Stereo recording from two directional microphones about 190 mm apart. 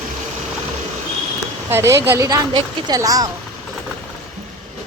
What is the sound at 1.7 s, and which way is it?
A woman's voice, 15° right (ahead or behind).